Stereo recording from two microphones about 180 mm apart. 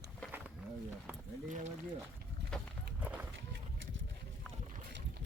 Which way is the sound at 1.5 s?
45° right (ahead or behind).